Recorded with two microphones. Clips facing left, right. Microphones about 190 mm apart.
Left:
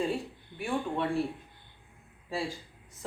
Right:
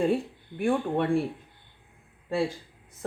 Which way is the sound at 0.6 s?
55° right (ahead or behind).